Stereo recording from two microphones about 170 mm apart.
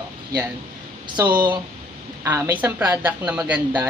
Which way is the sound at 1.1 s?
25° right (ahead or behind).